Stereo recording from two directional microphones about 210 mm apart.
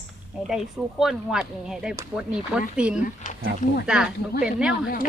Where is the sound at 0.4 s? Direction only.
Centre (ahead or behind).